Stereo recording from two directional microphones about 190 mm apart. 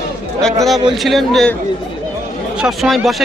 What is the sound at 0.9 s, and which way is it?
Speech, centre (ahead or behind).